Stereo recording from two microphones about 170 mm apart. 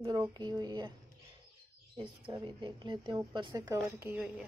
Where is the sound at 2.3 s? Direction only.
25° right (ahead or behind).